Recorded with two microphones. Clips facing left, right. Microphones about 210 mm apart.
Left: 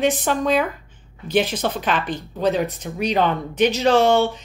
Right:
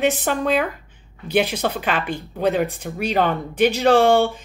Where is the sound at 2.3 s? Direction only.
50° right (ahead or behind).